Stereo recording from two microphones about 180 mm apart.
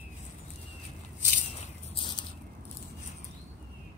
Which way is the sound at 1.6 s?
30° left (ahead or behind).